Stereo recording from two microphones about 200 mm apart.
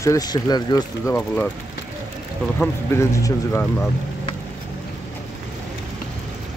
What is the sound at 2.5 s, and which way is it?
Speech, 10° left (ahead or behind).